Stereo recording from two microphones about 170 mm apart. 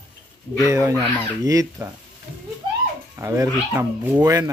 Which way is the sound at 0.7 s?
15° right (ahead or behind).